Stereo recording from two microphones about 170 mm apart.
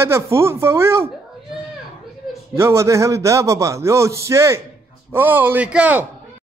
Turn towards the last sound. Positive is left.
turn(degrees=-10)  # may be behind; listen again after turning